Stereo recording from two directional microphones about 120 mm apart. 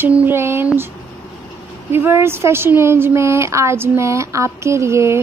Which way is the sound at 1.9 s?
20° right (ahead or behind).